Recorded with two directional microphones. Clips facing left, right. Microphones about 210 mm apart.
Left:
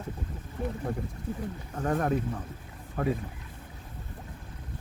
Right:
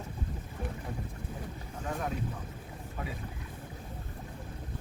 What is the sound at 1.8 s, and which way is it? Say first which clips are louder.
Speech: left 8 dB; 60° left (ahead or behind).